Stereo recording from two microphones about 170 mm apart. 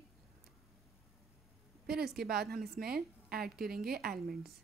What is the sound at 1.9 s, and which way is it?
A woman's voice, 65° right (ahead or behind).